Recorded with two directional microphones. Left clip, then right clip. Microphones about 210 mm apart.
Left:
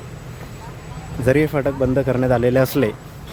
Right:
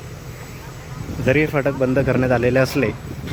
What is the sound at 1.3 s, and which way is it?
Speech, 10° left (ahead or behind).